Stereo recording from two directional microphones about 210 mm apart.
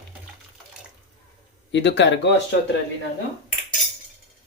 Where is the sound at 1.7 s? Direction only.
55° left (ahead or behind).